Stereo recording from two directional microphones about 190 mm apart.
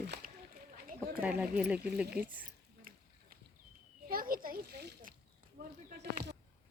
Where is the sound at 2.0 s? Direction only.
55° right (ahead or behind).